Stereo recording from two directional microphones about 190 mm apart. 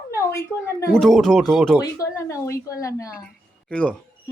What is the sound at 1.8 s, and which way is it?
Speech, 15° left (ahead or behind).